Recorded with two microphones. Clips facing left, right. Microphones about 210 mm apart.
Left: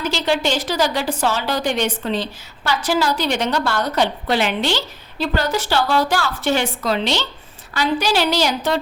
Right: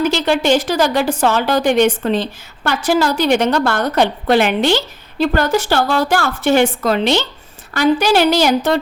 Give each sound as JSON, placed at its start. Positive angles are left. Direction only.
{"t": 0.0, "sound": "a woman's voice", "side_deg": -55}